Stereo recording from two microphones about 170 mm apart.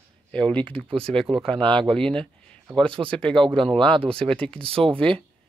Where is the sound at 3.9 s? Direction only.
35° right (ahead or behind).